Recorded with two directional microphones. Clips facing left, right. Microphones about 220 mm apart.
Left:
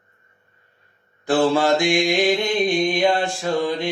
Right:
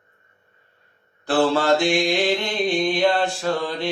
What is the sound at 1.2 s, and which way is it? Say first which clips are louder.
Mantra: left 2 dB; 10° left (ahead or behind).